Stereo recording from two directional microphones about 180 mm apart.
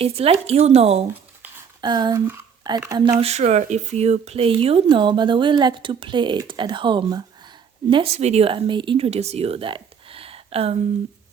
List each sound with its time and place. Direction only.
0.0 s speech: 35° right (ahead or behind)
1.8 s speech: 25° right (ahead or behind)
3.2 s speech: 35° right (ahead or behind)